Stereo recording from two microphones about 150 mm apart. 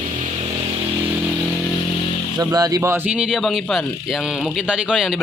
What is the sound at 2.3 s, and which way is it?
Speech, 25° right (ahead or behind).